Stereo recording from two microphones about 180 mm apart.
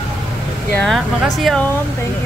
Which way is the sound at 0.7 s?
5° left (ahead or behind).